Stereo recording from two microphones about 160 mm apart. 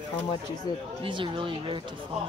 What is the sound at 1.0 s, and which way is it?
Speech, 30° right (ahead or behind).